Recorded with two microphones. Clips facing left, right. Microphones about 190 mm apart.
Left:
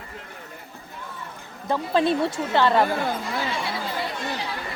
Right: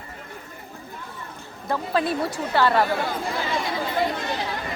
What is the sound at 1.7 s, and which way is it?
A woman's voice, 25° left (ahead or behind).